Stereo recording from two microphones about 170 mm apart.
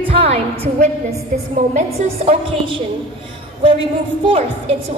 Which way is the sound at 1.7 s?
35° right (ahead or behind).